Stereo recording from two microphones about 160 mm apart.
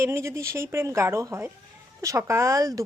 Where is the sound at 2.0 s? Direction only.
20° right (ahead or behind).